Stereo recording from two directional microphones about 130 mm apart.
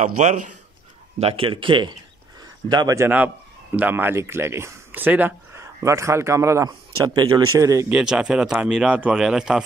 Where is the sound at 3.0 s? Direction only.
15° right (ahead or behind).